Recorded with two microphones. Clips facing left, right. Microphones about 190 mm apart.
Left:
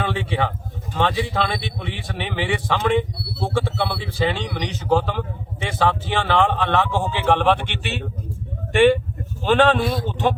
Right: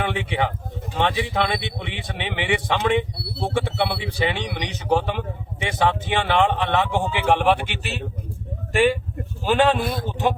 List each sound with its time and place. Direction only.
0.0 s a man's voice: 20° right (ahead or behind)